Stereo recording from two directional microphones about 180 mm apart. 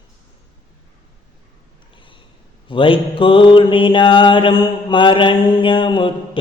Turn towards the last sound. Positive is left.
turn(degrees=25)  # may be behind; listen again after turning